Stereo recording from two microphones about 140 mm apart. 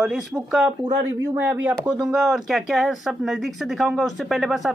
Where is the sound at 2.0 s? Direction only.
Centre (ahead or behind).